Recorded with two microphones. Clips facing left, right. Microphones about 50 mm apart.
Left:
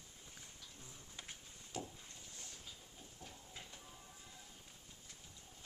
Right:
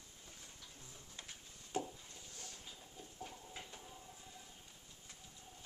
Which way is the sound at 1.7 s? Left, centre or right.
Right.